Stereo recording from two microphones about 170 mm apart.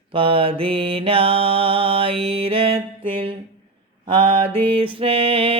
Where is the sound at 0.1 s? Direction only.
30° right (ahead or behind).